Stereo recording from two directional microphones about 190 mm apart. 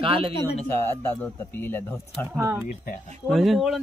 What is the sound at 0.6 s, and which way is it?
Speech, 10° left (ahead or behind).